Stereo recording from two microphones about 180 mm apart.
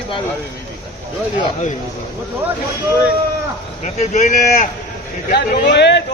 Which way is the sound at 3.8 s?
40° left (ahead or behind).